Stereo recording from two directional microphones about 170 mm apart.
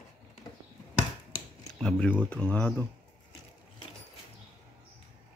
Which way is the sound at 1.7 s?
5° left (ahead or behind).